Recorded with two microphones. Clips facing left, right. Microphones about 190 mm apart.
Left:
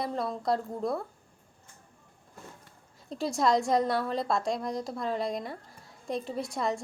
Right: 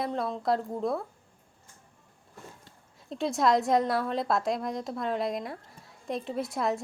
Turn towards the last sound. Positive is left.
turn(degrees=-5)  # may be behind; listen again after turning